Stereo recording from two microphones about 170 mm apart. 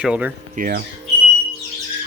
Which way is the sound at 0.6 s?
55° right (ahead or behind).